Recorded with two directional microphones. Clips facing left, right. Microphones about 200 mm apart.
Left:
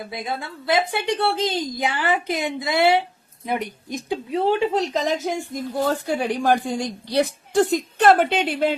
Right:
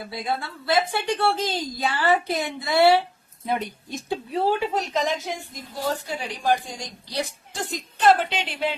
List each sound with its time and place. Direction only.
0.1 s a woman's voice: 20° left (ahead or behind)
4.9 s speech: 40° left (ahead or behind)